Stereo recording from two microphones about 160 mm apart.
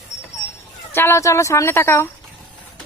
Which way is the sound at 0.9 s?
15° left (ahead or behind).